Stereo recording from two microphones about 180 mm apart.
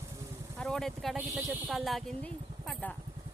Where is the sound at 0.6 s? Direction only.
5° left (ahead or behind).